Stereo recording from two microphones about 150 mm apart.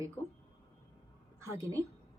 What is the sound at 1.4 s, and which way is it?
Speech, 20° right (ahead or behind).